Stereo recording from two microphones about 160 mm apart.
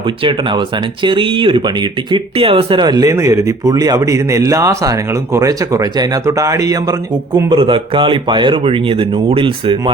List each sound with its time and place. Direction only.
0.2 s speech: 30° right (ahead or behind)
7.5 s speech: 30° right (ahead or behind)